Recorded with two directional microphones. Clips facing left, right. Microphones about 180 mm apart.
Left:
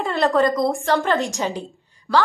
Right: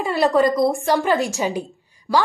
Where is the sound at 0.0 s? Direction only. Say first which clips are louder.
Right 1 dB; centre (ahead or behind).